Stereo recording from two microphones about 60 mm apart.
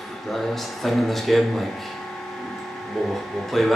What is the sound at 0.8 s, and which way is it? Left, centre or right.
Speech, centre.